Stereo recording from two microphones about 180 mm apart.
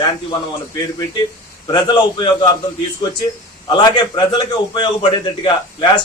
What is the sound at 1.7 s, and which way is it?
Speech, 25° left (ahead or behind).